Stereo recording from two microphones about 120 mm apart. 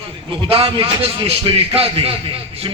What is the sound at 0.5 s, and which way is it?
A man's voice, 50° right (ahead or behind).